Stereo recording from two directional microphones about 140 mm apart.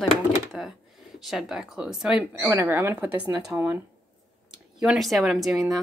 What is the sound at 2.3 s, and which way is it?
Speech, 15° right (ahead or behind).